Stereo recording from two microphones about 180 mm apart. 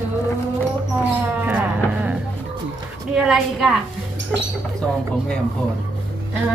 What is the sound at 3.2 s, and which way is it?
A woman's voice, 5° right (ahead or behind).